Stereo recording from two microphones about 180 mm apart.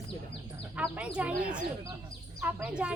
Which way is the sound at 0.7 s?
5° right (ahead or behind).